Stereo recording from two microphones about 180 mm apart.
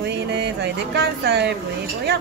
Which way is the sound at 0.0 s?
65° right (ahead or behind).